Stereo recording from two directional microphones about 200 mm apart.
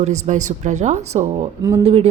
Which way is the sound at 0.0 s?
35° right (ahead or behind).